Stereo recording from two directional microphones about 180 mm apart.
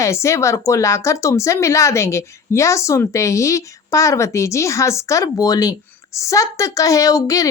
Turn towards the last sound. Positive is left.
turn(degrees=20)  # may be behind; listen again after turning